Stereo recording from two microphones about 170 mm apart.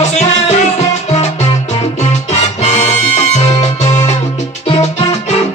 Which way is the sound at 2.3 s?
40° left (ahead or behind).